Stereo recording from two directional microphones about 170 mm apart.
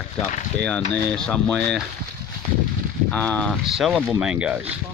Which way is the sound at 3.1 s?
10° left (ahead or behind).